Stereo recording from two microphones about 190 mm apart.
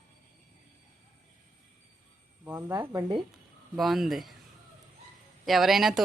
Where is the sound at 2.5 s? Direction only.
15° right (ahead or behind).